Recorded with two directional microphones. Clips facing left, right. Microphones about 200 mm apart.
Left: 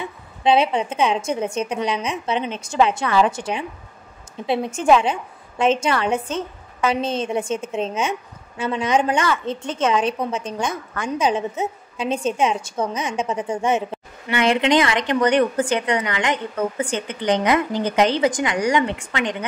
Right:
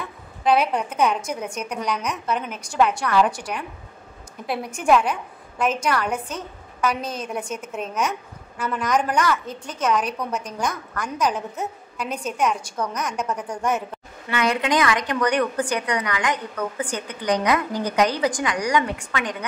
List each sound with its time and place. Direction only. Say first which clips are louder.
0.4 s a woman's voice: left 2 dB; 25° left (ahead or behind)